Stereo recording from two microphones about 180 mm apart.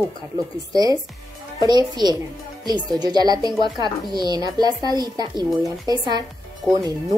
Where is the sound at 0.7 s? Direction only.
20° right (ahead or behind).